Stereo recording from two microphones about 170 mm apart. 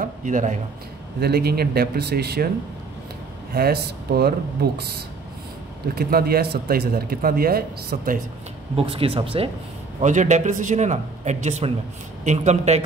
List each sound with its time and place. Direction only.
0.0 s a man's voice: 50° right (ahead or behind)
1.2 s speech: 65° right (ahead or behind)
3.5 s speech: 65° right (ahead or behind)
5.9 s speech: 65° right (ahead or behind)
8.7 s speech: 35° right (ahead or behind)
9.9 s speech: 45° right (ahead or behind)